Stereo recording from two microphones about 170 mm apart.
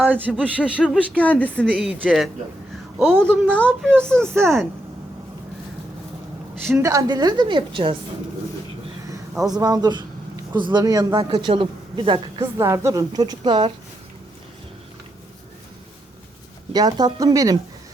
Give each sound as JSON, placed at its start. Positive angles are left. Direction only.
{"t": 0.0, "sound": "speech", "side_deg": -10}
{"t": 0.9, "sound": "speech", "side_deg": 10}
{"t": 1.9, "sound": "speech", "side_deg": -10}
{"t": 3.8, "sound": "speech", "side_deg": -15}
{"t": 6.7, "sound": "a woman's voice", "side_deg": -20}
{"t": 9.4, "sound": "speech", "side_deg": -20}
{"t": 12.6, "sound": "a woman's voice", "side_deg": -20}
{"t": 16.7, "sound": "a woman's voice", "side_deg": -25}